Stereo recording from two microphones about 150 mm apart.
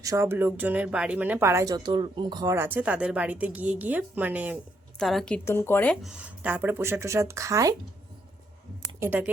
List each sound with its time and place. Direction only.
0.0 s speech: 20° right (ahead or behind)
2.6 s speech: 15° right (ahead or behind)
4.9 s a woman's voice: 5° left (ahead or behind)
5.5 s speech: 15° left (ahead or behind); by 7.8 s 20° right (ahead or behind)
9.0 s speech: 10° right (ahead or behind)